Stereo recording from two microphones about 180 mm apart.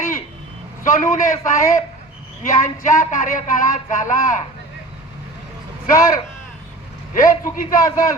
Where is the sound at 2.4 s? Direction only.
45° left (ahead or behind).